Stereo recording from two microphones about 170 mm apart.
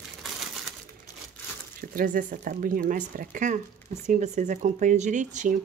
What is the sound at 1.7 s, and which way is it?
Speech, 55° right (ahead or behind).